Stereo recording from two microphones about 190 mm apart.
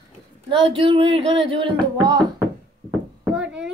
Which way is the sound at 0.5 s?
25° right (ahead or behind).